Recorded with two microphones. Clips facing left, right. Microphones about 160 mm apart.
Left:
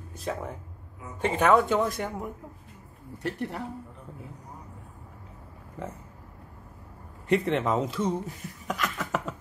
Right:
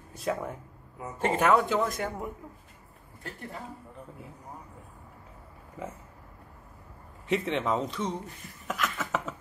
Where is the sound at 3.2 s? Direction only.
75° left (ahead or behind).